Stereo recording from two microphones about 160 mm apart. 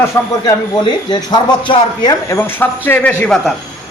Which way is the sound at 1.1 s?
25° left (ahead or behind).